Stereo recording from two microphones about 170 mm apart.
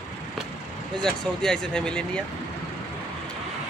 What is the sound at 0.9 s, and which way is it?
Speech, 5° left (ahead or behind).